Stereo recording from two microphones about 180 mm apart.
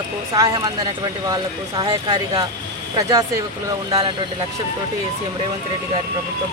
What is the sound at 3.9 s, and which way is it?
Speech, 30° right (ahead or behind).